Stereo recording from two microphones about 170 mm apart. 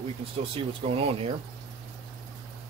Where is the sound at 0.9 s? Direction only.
35° right (ahead or behind).